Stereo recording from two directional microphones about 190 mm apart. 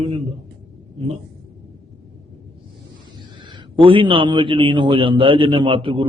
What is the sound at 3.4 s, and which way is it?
A man's voice, 25° right (ahead or behind).